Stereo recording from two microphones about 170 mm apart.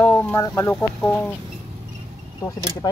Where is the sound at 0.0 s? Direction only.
10° left (ahead or behind).